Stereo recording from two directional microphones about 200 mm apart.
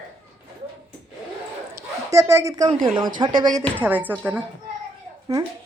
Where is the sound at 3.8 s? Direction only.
10° right (ahead or behind).